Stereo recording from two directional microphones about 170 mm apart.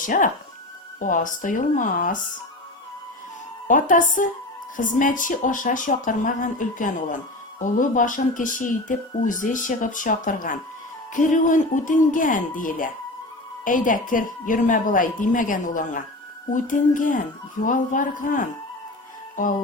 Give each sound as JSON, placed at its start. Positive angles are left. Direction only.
{"t": 0.0, "sound": "speech", "side_deg": 50}
{"t": 3.7, "sound": "speech", "side_deg": 50}